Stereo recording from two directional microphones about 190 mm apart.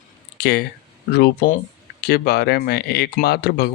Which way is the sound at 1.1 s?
55° left (ahead or behind).